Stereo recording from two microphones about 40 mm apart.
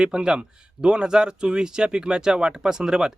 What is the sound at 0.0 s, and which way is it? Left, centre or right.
Speech, centre.